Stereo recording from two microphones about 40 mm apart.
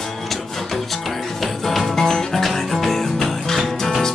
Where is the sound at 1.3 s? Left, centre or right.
Centre.